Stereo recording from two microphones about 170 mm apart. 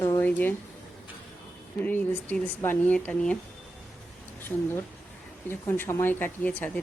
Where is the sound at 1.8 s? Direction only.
10° left (ahead or behind).